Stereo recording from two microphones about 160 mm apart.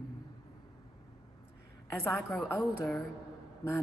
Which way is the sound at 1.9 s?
15° left (ahead or behind).